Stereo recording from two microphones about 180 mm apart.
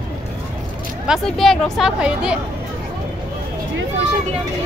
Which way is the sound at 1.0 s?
Centre (ahead or behind).